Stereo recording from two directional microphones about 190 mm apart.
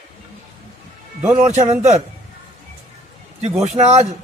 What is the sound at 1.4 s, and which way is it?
Speech, 40° right (ahead or behind).